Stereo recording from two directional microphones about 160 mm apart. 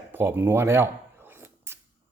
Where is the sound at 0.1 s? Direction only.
15° right (ahead or behind).